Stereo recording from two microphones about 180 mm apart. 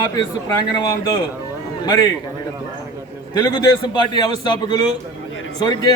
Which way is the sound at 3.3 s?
20° left (ahead or behind).